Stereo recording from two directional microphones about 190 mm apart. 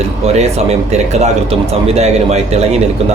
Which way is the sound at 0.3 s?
35° right (ahead or behind).